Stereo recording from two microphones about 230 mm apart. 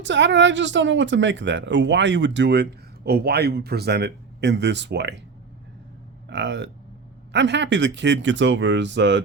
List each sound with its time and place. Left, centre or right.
0.0 s speech: right
6.2 s speech: right